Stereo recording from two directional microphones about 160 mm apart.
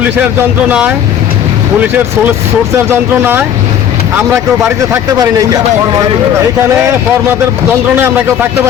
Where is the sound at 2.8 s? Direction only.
15° right (ahead or behind).